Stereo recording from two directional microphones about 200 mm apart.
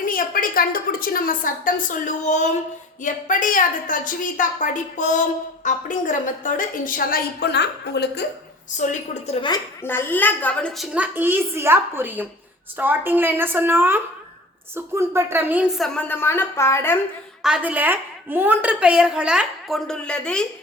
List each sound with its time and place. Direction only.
0.0 s a woman's voice: 45° left (ahead or behind)
8.8 s a woman's voice: 35° left (ahead or behind)
9.5 s a woman's voice: 10° left (ahead or behind)
10.9 s a woman's voice: 10° right (ahead or behind)
16.0 s a woman's voice: 10° left (ahead or behind)
17.4 s a woman's voice: 5° right (ahead or behind)